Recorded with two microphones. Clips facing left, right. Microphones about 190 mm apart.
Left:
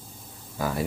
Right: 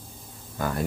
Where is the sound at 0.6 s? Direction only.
5° left (ahead or behind).